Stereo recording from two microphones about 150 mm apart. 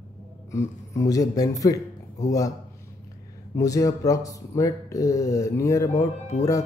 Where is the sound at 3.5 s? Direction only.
20° left (ahead or behind).